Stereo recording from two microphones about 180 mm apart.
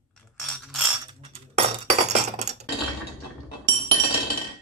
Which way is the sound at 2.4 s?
40° right (ahead or behind).